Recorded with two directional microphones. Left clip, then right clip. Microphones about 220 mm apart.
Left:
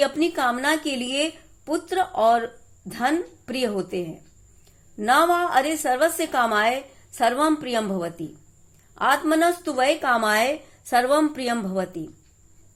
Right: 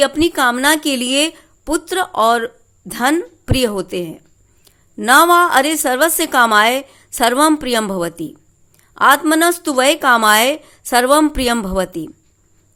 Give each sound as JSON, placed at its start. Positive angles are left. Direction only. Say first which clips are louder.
{"t": 0.0, "sound": "a woman's voice", "louder": "right 8 dB", "side_deg": -40}